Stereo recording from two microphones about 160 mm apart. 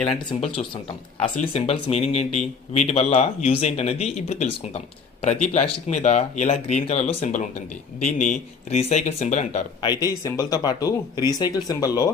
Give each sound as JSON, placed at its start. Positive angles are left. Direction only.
{"t": 0.3, "sound": "speech", "side_deg": 30}
{"t": 9.8, "sound": "speech", "side_deg": 25}